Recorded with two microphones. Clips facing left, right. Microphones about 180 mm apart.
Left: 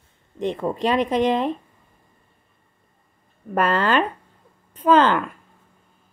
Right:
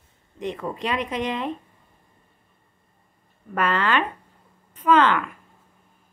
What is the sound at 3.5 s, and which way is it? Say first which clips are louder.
Speech: left 3 dB; 40° left (ahead or behind).